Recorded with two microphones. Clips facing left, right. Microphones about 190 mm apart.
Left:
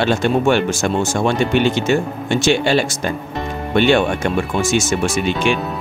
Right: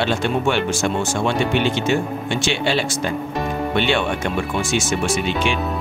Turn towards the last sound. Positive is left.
turn(degrees=45)  # may be behind; listen again after turning